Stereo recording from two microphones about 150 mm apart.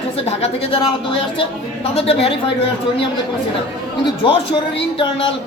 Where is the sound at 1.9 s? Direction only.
40° left (ahead or behind).